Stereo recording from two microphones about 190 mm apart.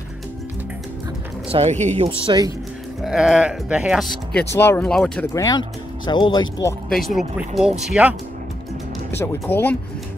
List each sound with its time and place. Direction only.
1.5 s speech: 35° right (ahead or behind)
3.0 s speech: 5° right (ahead or behind)
5.3 s speech: 20° left (ahead or behind)
6.9 s speech: centre (ahead or behind)
9.1 s speech: 10° left (ahead or behind)